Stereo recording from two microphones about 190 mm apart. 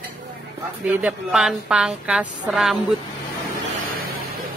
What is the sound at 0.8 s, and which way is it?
A woman's voice, 5° right (ahead or behind).